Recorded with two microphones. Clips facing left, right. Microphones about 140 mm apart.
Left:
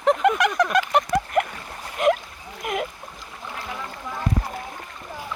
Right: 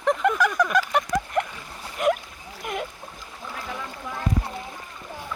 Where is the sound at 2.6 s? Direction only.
70° left (ahead or behind).